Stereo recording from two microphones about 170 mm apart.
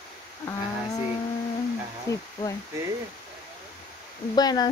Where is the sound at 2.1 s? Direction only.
15° left (ahead or behind).